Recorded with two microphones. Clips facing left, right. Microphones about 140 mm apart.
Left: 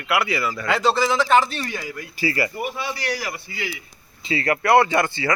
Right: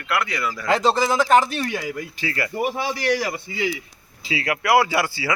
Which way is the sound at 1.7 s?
20° right (ahead or behind).